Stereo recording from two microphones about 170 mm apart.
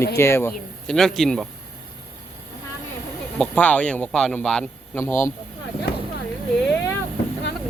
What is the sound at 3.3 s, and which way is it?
Speech, 10° left (ahead or behind).